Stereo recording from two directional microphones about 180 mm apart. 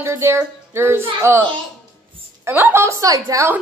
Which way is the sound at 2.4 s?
15° right (ahead or behind).